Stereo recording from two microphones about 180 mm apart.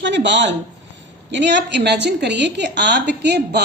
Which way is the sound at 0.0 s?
80° right.